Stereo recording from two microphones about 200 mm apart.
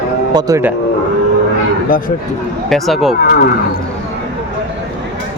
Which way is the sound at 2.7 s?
Centre (ahead or behind).